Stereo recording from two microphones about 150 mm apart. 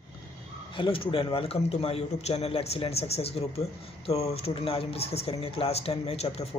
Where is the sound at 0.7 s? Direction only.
35° left (ahead or behind).